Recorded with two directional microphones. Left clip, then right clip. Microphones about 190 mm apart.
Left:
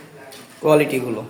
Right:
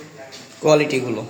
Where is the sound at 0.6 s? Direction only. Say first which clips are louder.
Even; 5° left (ahead or behind).